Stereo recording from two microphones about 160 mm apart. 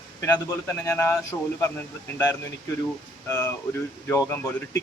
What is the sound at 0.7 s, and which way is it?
Speech, 15° left (ahead or behind).